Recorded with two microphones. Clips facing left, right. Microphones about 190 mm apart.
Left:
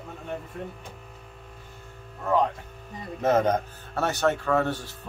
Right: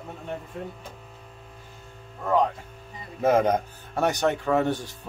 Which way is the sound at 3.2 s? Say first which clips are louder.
Right 1 dB; 10° right (ahead or behind).